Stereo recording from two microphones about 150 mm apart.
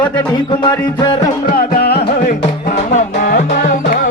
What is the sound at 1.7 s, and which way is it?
Music, 90° left.